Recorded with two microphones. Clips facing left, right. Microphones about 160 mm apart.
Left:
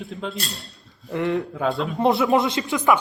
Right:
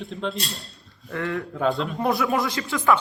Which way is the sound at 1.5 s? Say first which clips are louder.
Even; centre (ahead or behind).